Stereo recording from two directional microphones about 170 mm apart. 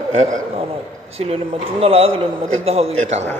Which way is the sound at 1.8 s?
35° right (ahead or behind).